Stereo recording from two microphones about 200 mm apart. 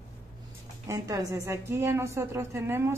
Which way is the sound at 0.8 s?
15° right (ahead or behind).